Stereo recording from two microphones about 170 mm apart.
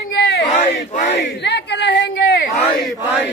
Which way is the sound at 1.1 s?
90° left.